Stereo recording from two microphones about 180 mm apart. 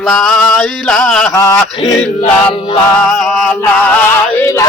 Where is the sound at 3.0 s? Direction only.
Centre (ahead or behind).